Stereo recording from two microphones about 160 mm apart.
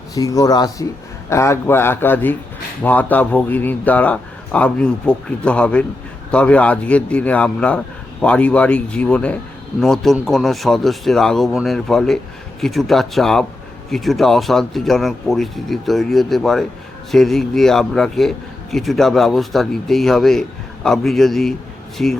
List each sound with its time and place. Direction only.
0.1 s speech: 20° left (ahead or behind); by 22.2 s centre (ahead or behind)